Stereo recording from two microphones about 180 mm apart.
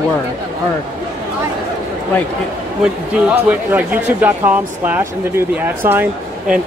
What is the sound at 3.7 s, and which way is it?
Speech, 10° right (ahead or behind).